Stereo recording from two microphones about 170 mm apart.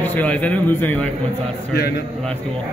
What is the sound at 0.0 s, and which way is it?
A man's voice, 10° left (ahead or behind).